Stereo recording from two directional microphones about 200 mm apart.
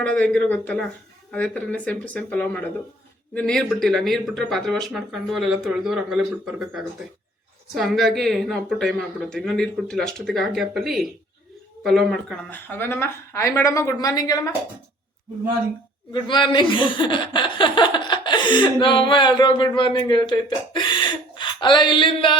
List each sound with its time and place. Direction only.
0.0 s a woman's voice: 5° left (ahead or behind)
16.1 s speech: 25° left (ahead or behind)